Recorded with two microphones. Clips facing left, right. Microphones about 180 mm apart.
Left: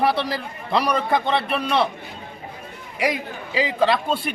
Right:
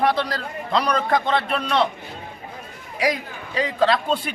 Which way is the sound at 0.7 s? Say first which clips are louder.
Even; 5° left (ahead or behind).